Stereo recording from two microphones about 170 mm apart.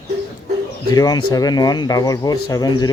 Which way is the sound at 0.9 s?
20° left (ahead or behind).